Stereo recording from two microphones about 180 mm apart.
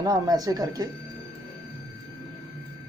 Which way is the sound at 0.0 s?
20° right (ahead or behind).